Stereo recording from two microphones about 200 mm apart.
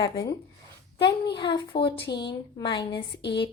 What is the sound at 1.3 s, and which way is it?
A woman's voice, 25° left (ahead or behind).